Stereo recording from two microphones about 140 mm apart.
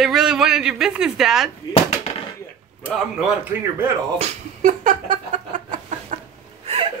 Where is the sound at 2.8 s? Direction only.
10° right (ahead or behind).